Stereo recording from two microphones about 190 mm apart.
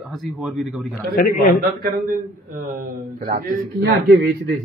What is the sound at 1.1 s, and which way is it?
Speech, 55° left (ahead or behind).